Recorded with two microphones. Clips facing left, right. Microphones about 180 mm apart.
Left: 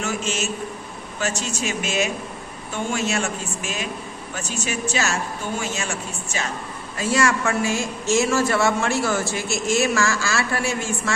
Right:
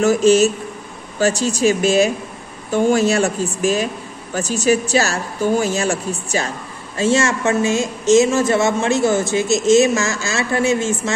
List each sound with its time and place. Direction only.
0.0 s speech: 35° right (ahead or behind)
7.0 s speech: 25° right (ahead or behind)